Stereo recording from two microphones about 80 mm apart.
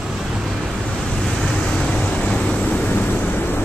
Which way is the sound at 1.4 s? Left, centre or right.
Centre.